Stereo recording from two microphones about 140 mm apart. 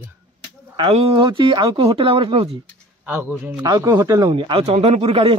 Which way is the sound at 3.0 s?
15° right (ahead or behind).